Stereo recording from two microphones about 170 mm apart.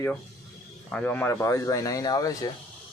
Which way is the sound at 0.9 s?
5° left (ahead or behind).